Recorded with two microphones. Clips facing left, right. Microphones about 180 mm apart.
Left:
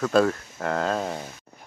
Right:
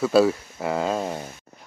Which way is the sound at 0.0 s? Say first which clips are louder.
Right 3 dB; 5° right (ahead or behind).